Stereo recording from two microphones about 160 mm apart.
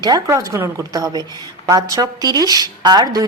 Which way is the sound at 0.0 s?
20° right (ahead or behind).